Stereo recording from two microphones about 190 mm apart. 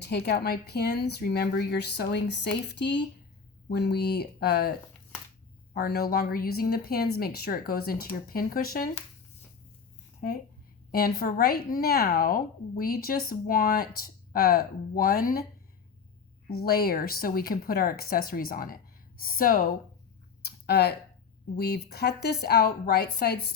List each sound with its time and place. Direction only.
0.0 s speech: 60° left (ahead or behind)
5.7 s a woman's voice: 55° left (ahead or behind)
10.2 s a woman's voice: 50° left (ahead or behind)
16.6 s a woman's voice: 55° left (ahead or behind)
20.4 s a sound: 60° left (ahead or behind)
21.5 s speech: 55° left (ahead or behind)